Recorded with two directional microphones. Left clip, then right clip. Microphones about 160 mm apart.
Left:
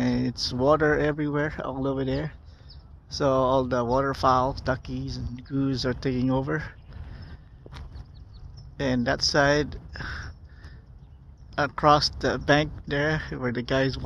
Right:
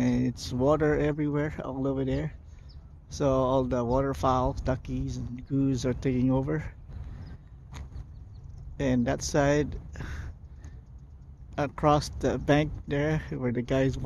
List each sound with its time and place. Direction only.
0.0 s speech: centre (ahead or behind)
8.7 s speech: 15° right (ahead or behind)
11.5 s speech: 15° right (ahead or behind)